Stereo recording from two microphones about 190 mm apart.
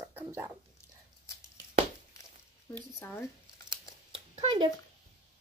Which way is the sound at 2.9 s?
15° left (ahead or behind).